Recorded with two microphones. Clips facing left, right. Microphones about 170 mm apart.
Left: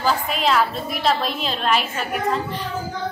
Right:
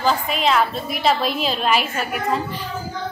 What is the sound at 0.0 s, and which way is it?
A woman's voice, centre (ahead or behind).